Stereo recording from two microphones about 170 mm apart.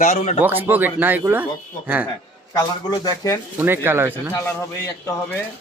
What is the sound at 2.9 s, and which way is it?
Speech, 20° left (ahead or behind).